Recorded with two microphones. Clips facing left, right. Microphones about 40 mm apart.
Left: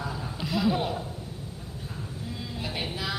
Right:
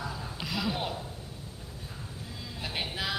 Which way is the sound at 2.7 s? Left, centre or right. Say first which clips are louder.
Even; centre.